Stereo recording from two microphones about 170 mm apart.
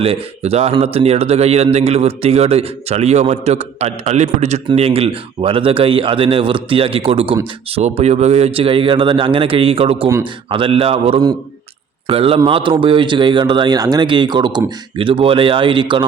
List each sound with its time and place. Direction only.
0.0 s speech: 35° right (ahead or behind)